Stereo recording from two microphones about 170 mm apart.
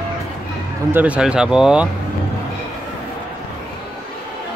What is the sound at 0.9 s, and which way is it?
Speech, 10° right (ahead or behind).